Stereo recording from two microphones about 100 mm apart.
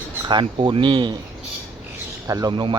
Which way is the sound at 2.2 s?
35° right (ahead or behind).